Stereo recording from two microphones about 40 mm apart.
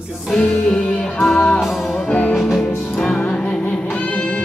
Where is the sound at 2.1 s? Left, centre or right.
Left.